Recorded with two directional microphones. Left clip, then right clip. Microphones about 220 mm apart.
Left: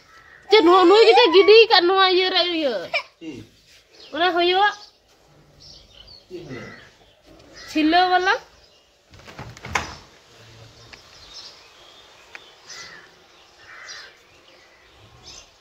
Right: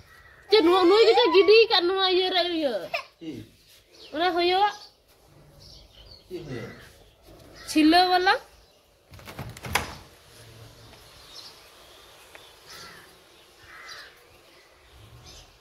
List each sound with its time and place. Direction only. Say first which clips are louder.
0.5 s a woman's voice: left 5 dB; 30° left (ahead or behind)
4.1 s a woman's voice: left 4 dB; 15° left (ahead or behind)
7.6 s a woman's voice: left 2 dB; centre (ahead or behind)